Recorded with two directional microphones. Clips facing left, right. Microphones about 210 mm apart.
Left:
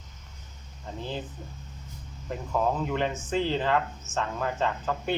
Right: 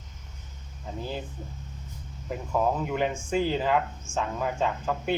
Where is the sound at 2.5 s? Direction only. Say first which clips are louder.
Right 1 dB; 10° right (ahead or behind).